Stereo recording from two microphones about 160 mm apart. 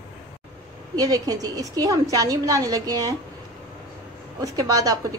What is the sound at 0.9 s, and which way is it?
A woman's voice, 25° right (ahead or behind).